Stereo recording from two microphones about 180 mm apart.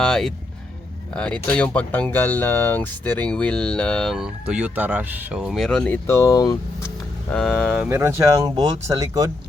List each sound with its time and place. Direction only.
0.0 s speech: centre (ahead or behind); by 6.6 s 20° left (ahead or behind)
6.8 s speech: 5° left (ahead or behind)
7.9 s speech: 15° right (ahead or behind)